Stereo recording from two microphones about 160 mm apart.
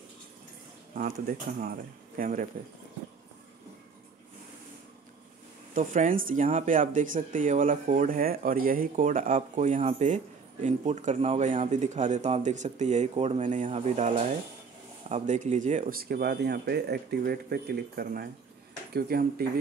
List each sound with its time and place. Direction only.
0.9 s speech: 60° right (ahead or behind)
5.8 s speech: 55° right (ahead or behind); by 19.6 s 75° right (ahead or behind)